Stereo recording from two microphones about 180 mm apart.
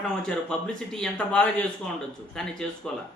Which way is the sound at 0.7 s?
5° left (ahead or behind).